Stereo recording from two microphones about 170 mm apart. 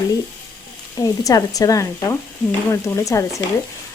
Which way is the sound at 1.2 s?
20° left (ahead or behind).